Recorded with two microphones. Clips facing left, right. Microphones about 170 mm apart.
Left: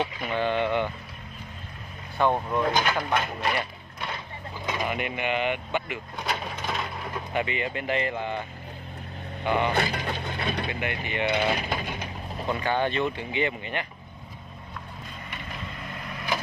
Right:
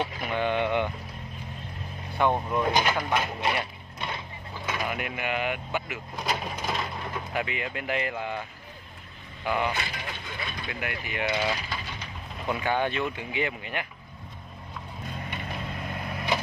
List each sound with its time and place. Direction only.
0.0 s a sound: 10° right (ahead or behind)
2.2 s speech: 15° right (ahead or behind)
4.8 s speech: centre (ahead or behind)
9.8 s speech: 65° left (ahead or behind)
10.7 s speech: centre (ahead or behind)
11.2 s speech: 60° left (ahead or behind)
12.4 s speech: 10° right (ahead or behind)